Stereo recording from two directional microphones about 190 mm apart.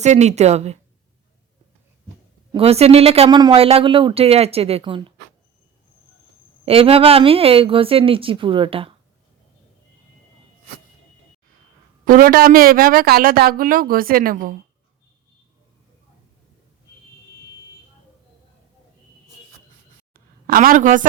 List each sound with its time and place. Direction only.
0.0 s speech: 35° right (ahead or behind)
2.5 s speech: 30° right (ahead or behind)
6.7 s a woman's voice: 30° right (ahead or behind)
12.0 s speech: 50° right (ahead or behind)
20.1 s a sound: 50° right (ahead or behind)